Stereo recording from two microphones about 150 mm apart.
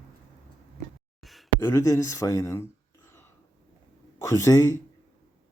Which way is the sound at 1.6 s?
15° left (ahead or behind).